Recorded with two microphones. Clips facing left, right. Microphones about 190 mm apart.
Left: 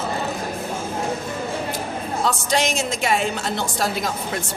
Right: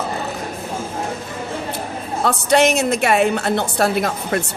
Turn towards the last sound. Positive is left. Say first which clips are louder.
# right 6 dB
turn(degrees=-60)  # may be behind; listen again after turning